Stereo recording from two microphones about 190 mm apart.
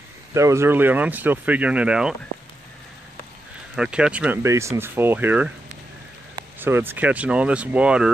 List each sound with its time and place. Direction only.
0.3 s speech: 15° right (ahead or behind)
3.7 s speech: 5° right (ahead or behind)
6.6 s speech: 10° right (ahead or behind)